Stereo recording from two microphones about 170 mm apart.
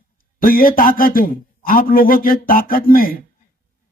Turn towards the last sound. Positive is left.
turn(degrees=55)  # may be behind; listen again after turning